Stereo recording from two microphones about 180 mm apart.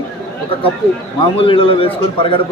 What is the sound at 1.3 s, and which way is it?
A man's voice, 30° left (ahead or behind).